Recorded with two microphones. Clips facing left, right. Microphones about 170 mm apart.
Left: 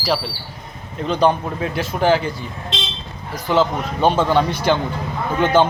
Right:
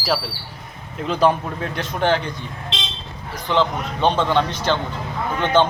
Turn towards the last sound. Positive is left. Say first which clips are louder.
# left 2 dB
turn(degrees=5)  # may be behind; listen again after turning